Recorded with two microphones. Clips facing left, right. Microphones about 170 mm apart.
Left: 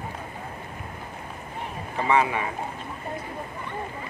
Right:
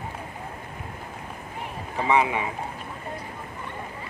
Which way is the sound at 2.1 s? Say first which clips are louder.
Even; 15° right (ahead or behind).